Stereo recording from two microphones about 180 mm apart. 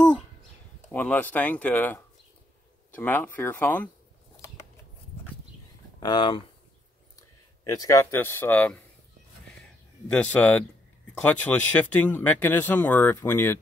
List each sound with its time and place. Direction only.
0.9 s speech: 10° left (ahead or behind)
3.0 s speech: 10° left (ahead or behind)
5.9 s speech: 25° left (ahead or behind)
7.7 s speech: 20° left (ahead or behind)
9.6 s a sound: 5° left (ahead or behind)
11.1 s speech: 10° left (ahead or behind)